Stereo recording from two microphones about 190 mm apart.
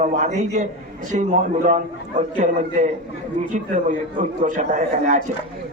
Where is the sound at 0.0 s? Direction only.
40° right (ahead or behind).